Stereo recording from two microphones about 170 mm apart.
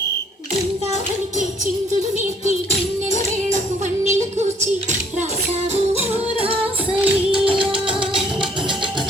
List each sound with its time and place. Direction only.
1.4 s music: 45° right (ahead or behind)
4.0 s music: 40° right (ahead or behind)
5.7 s music: 40° right (ahead or behind)